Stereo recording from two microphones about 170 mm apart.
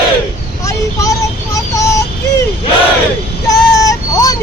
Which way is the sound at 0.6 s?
20° left (ahead or behind).